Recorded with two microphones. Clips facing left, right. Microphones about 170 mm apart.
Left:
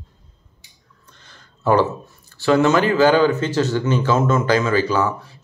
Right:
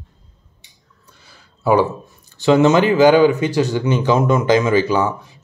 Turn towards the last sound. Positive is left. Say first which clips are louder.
# right 2 dB
turn(degrees=-15)  # may be behind; listen again after turning